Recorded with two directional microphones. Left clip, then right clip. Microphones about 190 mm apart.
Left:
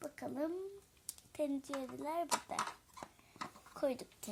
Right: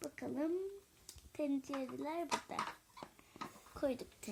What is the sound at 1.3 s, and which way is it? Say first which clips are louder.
A child's voice: left 1 dB; 25° left (ahead or behind).